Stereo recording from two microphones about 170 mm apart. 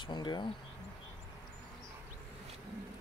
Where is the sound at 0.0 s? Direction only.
25° left (ahead or behind).